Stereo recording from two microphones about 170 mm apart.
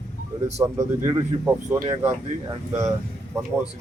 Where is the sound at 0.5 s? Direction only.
15° right (ahead or behind).